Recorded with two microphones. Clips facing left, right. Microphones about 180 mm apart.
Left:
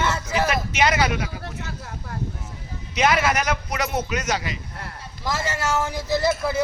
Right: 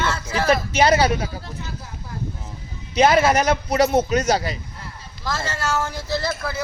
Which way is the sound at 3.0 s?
30° right (ahead or behind).